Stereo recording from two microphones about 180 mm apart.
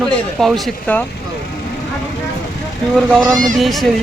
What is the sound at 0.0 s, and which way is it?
Speech, centre (ahead or behind).